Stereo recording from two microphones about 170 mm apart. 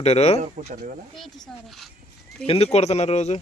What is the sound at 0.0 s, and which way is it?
Speech, 40° left (ahead or behind).